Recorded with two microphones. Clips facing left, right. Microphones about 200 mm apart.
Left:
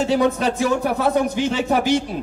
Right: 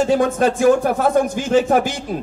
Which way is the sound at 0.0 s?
50° right (ahead or behind).